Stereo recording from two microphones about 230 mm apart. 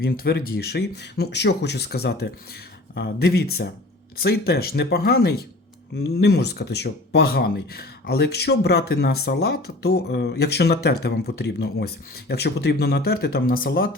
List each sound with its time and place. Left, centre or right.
0.0 s speech: left